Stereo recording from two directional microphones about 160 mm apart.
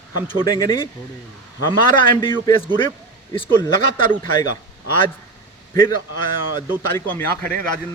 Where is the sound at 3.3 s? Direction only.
35° left (ahead or behind).